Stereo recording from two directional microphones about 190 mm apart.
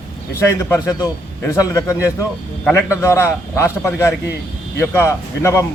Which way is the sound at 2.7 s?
15° left (ahead or behind).